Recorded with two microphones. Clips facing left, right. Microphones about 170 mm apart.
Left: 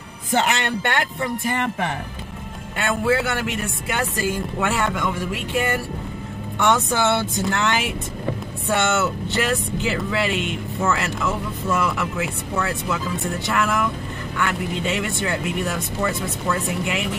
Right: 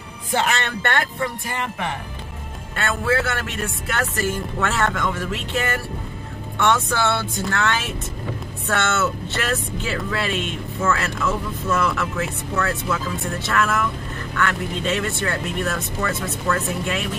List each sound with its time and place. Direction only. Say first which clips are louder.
0.6 s speech: left 1 dB; 15° left (ahead or behind)
2.7 s speech: left 2 dB; 15° left (ahead or behind)